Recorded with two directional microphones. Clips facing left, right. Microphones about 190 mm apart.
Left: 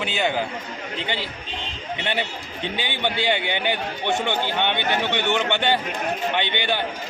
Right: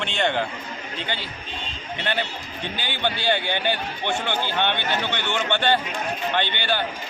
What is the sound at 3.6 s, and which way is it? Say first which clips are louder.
Speech: left 1 dB; 15° left (ahead or behind).